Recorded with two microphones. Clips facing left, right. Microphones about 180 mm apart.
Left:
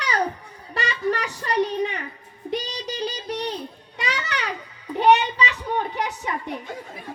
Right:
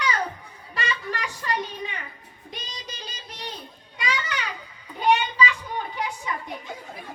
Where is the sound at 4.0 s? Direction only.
75° left (ahead or behind).